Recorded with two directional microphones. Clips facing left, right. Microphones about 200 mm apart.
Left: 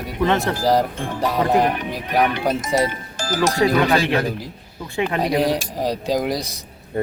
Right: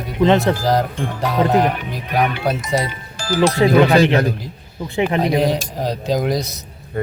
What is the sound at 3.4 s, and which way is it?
Speech, 40° left (ahead or behind).